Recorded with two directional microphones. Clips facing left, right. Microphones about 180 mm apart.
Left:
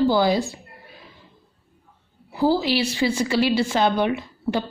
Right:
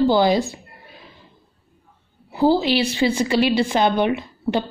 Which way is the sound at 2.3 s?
25° right (ahead or behind).